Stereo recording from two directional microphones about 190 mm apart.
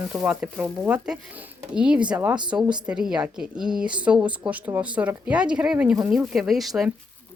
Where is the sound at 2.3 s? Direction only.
25° right (ahead or behind).